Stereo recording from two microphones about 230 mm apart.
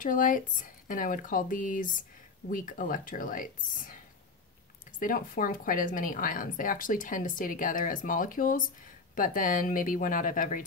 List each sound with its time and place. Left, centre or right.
0.0 s speech: left
4.9 s speech: left